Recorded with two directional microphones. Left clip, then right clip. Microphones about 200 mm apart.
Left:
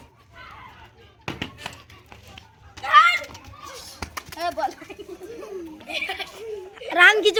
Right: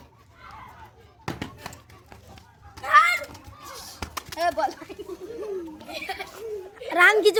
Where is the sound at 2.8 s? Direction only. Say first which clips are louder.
Left 3 dB; 5° right (ahead or behind).